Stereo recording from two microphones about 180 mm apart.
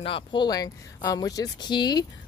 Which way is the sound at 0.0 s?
30° left (ahead or behind).